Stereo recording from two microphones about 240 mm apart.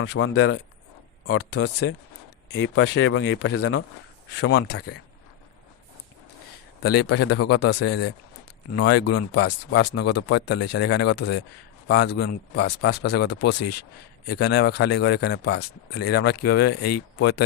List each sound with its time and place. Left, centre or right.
0.0 s speech: left
1.3 s speech: left
2.5 s speech: left
4.4 s speech: left
7.0 s speech: left